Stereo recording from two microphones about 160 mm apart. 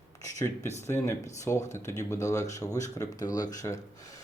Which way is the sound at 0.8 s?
15° left (ahead or behind).